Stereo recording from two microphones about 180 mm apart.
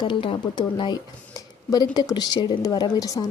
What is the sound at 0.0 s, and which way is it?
Speech, 30° left (ahead or behind).